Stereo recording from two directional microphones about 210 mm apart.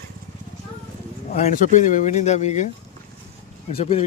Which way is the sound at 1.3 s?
35° left (ahead or behind).